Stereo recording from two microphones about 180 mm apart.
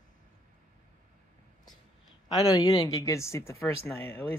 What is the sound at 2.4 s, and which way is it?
Speech, 20° left (ahead or behind).